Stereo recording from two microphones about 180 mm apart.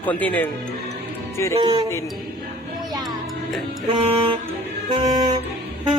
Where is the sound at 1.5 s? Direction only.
25° right (ahead or behind).